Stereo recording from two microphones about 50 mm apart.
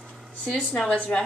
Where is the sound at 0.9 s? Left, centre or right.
Left.